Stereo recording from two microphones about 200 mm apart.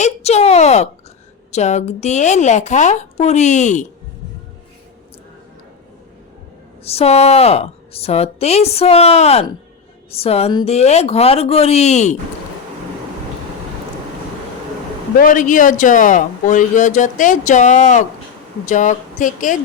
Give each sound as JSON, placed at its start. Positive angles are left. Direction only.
{"t": 0.0, "sound": "speech", "side_deg": 35}
{"t": 6.8, "sound": "speech", "side_deg": 30}
{"t": 15.2, "sound": "speech", "side_deg": 40}